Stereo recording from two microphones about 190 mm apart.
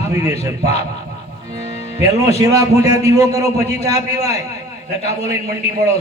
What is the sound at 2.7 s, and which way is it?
Speech, 35° left (ahead or behind).